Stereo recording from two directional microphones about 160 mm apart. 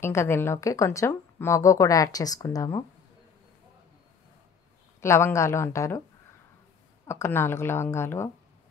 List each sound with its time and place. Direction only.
0.0 s a woman's voice: 15° left (ahead or behind)
5.0 s a woman's voice: 15° left (ahead or behind)
7.1 s a woman's voice: 15° left (ahead or behind)